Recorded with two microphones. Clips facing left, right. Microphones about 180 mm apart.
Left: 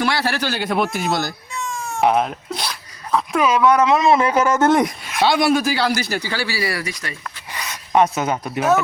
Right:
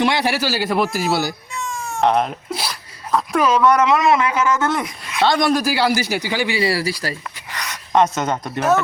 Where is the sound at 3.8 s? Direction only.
25° left (ahead or behind); by 4.8 s 40° left (ahead or behind).